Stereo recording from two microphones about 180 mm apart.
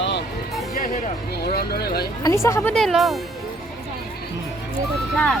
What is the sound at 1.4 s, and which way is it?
Speech, 60° left (ahead or behind).